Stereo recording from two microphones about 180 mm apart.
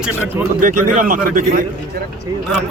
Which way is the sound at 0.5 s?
45° right (ahead or behind).